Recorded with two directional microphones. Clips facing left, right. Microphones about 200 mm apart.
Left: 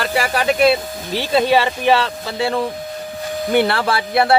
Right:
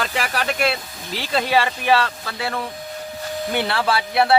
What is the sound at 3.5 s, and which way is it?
Speech, 55° left (ahead or behind).